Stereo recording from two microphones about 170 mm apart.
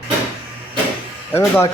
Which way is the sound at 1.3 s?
15° left (ahead or behind).